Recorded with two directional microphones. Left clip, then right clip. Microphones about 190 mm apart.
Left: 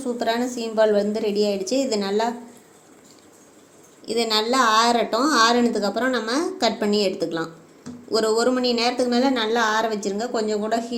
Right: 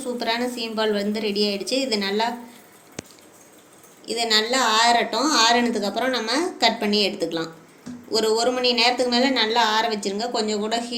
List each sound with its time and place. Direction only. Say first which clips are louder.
0.0 s a woman's voice: left 1 dB; 40° left (ahead or behind)
4.0 s a woman's voice: even; 50° left (ahead or behind)